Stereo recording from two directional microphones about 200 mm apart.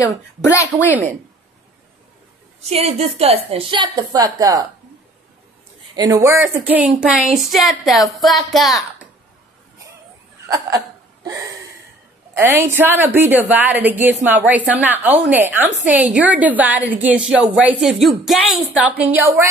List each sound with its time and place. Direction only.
0.7 s a woman's voice: 10° right (ahead or behind)
2.6 s a woman's voice: 30° right (ahead or behind)
5.9 s a woman's voice: 15° right (ahead or behind); by 8.8 s centre (ahead or behind)
12.4 s a woman's voice: 10° right (ahead or behind)